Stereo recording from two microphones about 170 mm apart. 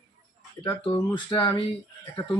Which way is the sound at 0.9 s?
25° left (ahead or behind).